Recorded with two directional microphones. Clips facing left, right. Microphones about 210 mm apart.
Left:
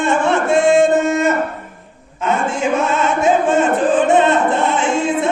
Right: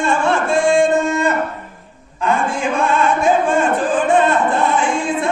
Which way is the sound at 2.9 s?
20° left (ahead or behind).